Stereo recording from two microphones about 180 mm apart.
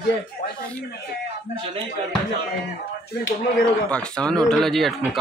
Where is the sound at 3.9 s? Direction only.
5° left (ahead or behind).